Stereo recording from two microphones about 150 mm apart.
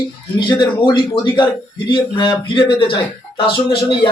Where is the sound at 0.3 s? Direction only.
30° left (ahead or behind).